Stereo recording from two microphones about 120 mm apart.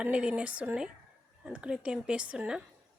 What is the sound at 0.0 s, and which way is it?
Speech, 10° right (ahead or behind).